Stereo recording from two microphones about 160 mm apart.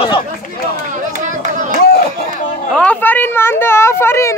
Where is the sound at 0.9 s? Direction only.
50° right (ahead or behind).